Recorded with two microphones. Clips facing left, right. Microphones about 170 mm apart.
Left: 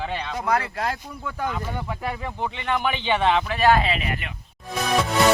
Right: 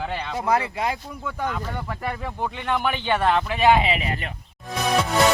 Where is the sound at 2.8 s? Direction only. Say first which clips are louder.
Even; 10° left (ahead or behind).